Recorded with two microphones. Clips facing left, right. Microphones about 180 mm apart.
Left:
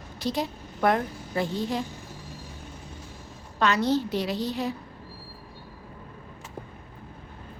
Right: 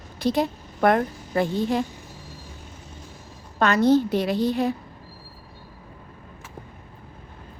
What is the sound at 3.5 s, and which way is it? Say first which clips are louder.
A woman's voice: right 6 dB; 50° right (ahead or behind).